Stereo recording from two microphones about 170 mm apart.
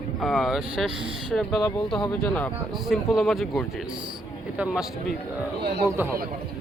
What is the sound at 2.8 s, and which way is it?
Speech, centre (ahead or behind).